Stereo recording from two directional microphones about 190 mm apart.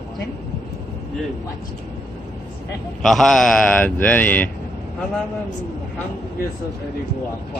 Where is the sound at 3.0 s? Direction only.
Centre (ahead or behind).